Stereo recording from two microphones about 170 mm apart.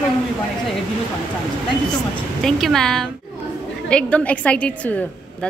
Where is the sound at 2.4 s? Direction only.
Centre (ahead or behind).